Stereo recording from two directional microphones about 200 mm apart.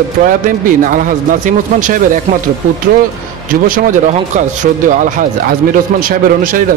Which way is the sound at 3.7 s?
40° right (ahead or behind).